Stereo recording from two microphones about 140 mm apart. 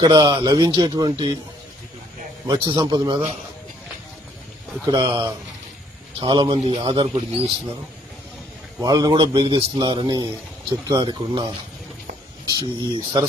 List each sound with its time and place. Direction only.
0.0 s speech: 30° right (ahead or behind)
2.5 s speech: 30° right (ahead or behind)
4.9 s speech: 30° right (ahead or behind)
6.6 s a man's voice: 50° right (ahead or behind)
6.8 s speech: 35° right (ahead or behind)
8.8 s a man's voice: 30° right (ahead or behind)
12.5 s speech: 30° right (ahead or behind)